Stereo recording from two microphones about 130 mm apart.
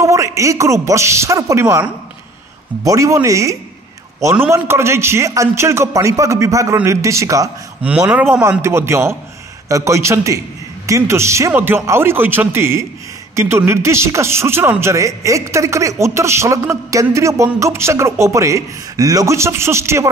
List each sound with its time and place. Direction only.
0.0 s a man's voice: 25° right (ahead or behind)
8.1 s a man's voice: 15° right (ahead or behind)